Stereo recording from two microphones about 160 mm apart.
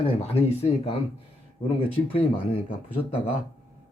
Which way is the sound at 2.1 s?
35° left (ahead or behind).